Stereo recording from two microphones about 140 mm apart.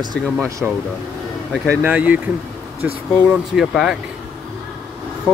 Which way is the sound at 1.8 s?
10° right (ahead or behind).